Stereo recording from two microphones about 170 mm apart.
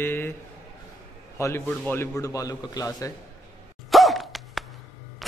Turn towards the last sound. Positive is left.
turn(degrees=0)  # may be behind; listen again after turning